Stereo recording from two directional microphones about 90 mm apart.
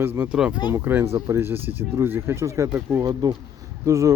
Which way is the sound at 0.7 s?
25° right (ahead or behind).